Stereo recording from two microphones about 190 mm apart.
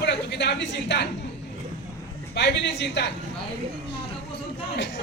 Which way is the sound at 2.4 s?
65° left (ahead or behind).